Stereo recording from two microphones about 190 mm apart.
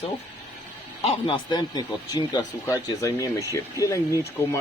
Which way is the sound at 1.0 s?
30° left (ahead or behind).